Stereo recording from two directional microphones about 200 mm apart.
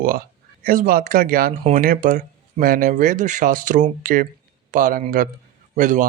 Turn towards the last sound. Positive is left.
turn(degrees=-40)  # may be behind; listen again after turning